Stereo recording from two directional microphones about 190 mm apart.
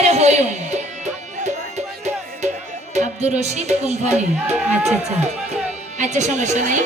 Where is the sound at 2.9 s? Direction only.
35° right (ahead or behind).